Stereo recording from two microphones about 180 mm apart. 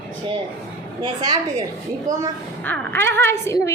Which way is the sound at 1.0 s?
20° right (ahead or behind).